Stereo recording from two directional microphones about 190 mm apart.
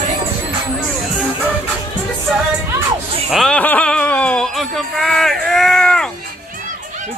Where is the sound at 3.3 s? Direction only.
5° left (ahead or behind).